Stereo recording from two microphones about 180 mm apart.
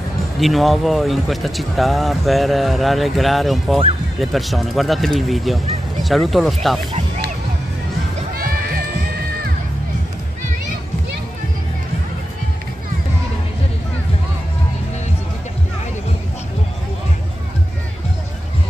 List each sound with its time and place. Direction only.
0.4 s speech: centre (ahead or behind)
8.4 s music: 55° right (ahead or behind)